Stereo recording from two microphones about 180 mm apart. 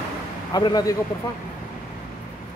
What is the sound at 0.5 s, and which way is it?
Speech, 20° left (ahead or behind).